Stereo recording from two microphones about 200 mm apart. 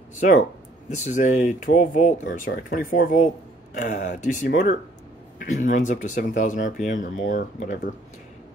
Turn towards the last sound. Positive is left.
turn(degrees=40)  # may be behind; listen again after turning